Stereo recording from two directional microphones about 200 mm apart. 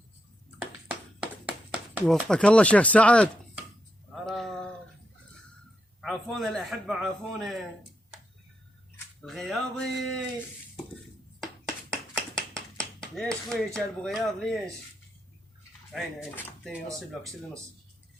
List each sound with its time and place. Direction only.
0.9 s a sound: 5° right (ahead or behind)
6.0 s a man's voice: centre (ahead or behind)
9.2 s a man's voice: centre (ahead or behind)
11.9 s clapping: 5° left (ahead or behind)
15.9 s speech: 5° left (ahead or behind)